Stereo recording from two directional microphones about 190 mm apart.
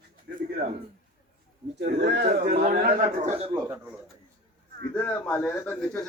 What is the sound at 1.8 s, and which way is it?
Speech, 60° right (ahead or behind).